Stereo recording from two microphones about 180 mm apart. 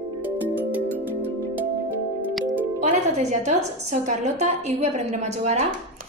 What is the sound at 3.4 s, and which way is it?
A woman's voice, 40° right (ahead or behind).